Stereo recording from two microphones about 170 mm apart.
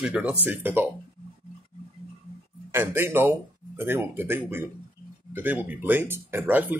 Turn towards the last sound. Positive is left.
turn(degrees=-10)  # may be behind; listen again after turning